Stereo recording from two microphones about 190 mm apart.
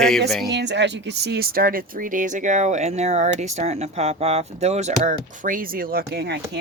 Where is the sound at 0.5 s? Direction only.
65° right (ahead or behind).